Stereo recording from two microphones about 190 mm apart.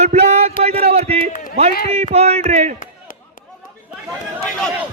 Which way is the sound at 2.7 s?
45° left (ahead or behind).